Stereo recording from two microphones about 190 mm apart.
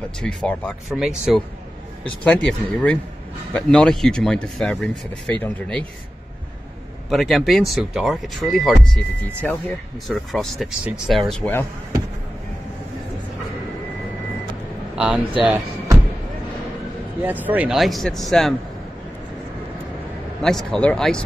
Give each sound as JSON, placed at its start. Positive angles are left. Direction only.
{"t": 0.2, "sound": "speech", "side_deg": 5}
{"t": 7.1, "sound": "speech", "side_deg": 0}
{"t": 15.0, "sound": "speech", "side_deg": -5}
{"t": 15.4, "sound": "music", "side_deg": -10}
{"t": 17.2, "sound": "speech", "side_deg": -10}
{"t": 20.4, "sound": "speech", "side_deg": 5}